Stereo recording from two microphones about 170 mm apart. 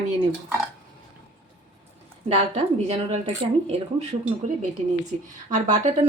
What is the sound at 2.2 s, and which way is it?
Speech, 35° right (ahead or behind).